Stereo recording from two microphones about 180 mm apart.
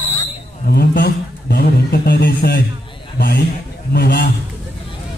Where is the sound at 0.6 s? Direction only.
60° left (ahead or behind).